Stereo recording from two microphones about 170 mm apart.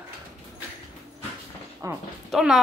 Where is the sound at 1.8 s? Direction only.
20° right (ahead or behind).